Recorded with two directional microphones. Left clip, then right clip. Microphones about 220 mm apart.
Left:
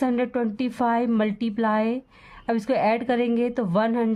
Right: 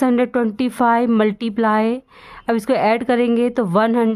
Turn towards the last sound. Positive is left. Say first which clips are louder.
# right 7 dB
turn(degrees=-35)  # may be behind; listen again after turning